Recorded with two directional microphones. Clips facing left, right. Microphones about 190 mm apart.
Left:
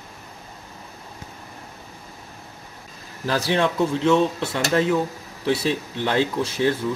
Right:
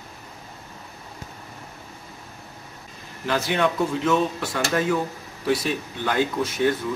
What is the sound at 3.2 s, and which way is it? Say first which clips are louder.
Speech: left 1 dB; 35° left (ahead or behind).